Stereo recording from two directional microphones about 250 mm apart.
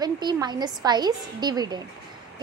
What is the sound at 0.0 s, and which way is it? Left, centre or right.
A woman's voice, centre.